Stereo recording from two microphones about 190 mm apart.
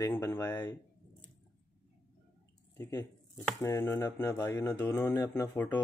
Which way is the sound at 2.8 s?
20° left (ahead or behind).